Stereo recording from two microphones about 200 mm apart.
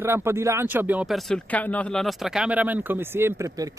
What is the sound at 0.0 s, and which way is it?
Speech, 10° right (ahead or behind).